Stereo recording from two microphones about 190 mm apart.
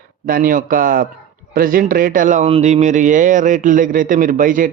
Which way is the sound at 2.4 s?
35° right (ahead or behind).